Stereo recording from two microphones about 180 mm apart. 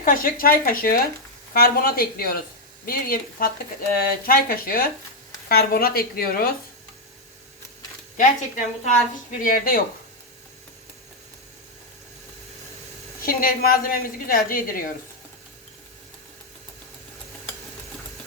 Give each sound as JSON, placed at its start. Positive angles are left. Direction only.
{"t": 0.0, "sound": "a woman's voice", "side_deg": 50}
{"t": 8.1, "sound": "a woman's voice", "side_deg": 45}
{"t": 13.2, "sound": "a woman's voice", "side_deg": 55}